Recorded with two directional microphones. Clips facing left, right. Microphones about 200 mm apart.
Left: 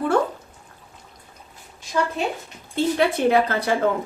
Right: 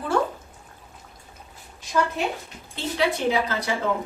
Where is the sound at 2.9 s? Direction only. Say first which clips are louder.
Left 3 dB; 55° left (ahead or behind).